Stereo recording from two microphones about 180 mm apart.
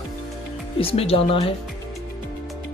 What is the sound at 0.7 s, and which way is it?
Speech, 30° left (ahead or behind).